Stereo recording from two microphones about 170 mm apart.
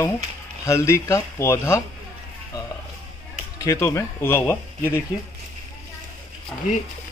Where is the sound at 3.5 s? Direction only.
20° left (ahead or behind).